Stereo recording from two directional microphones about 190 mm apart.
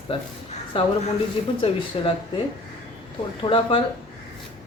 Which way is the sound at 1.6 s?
30° left (ahead or behind).